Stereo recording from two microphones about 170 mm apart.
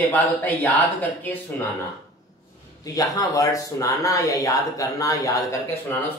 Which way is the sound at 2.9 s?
20° left (ahead or behind).